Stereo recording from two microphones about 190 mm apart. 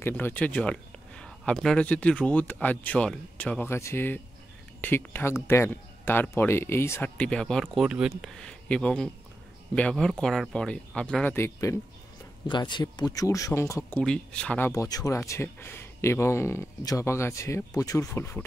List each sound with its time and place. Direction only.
0.0 s speech: 10° left (ahead or behind)
14.7 s speech: 20° left (ahead or behind)